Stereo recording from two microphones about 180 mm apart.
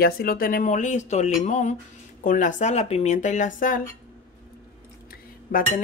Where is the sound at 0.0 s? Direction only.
55° left (ahead or behind).